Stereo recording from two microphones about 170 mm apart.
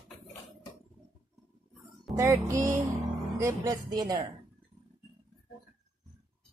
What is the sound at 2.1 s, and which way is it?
A woman's voice, 15° right (ahead or behind).